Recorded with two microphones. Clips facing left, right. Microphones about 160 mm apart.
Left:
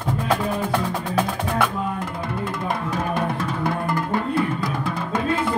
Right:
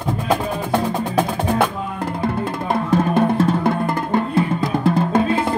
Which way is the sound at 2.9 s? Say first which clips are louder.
Right 12 dB; 30° right (ahead or behind).